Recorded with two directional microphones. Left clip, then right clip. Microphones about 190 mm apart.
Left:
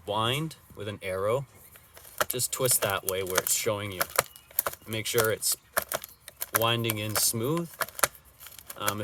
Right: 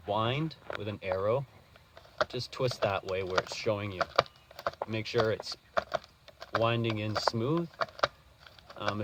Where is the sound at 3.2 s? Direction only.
25° left (ahead or behind).